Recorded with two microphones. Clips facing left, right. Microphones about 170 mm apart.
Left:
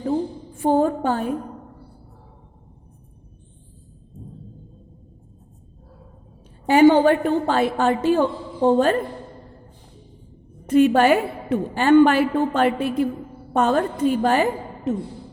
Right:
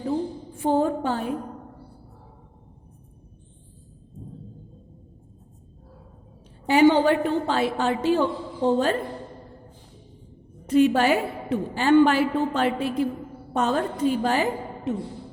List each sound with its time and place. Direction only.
0.6 s a woman's voice: 45° left (ahead or behind)
6.7 s a woman's voice: 50° left (ahead or behind)
10.7 s a woman's voice: 55° left (ahead or behind)
14.9 s a woman's voice: 45° left (ahead or behind)